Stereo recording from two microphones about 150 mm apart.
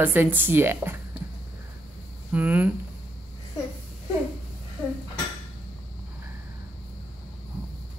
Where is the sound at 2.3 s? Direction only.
10° right (ahead or behind).